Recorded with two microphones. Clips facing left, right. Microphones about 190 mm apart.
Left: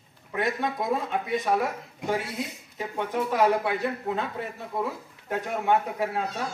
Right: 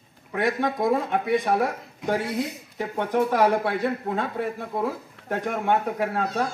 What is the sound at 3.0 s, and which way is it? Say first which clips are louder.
Speech: right 3 dB; 60° right (ahead or behind).